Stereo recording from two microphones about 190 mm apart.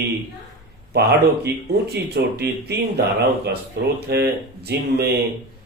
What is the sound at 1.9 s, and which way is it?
Speech, 60° right (ahead or behind).